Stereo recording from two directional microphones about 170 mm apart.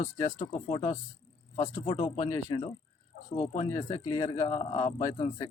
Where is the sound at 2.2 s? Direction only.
20° left (ahead or behind).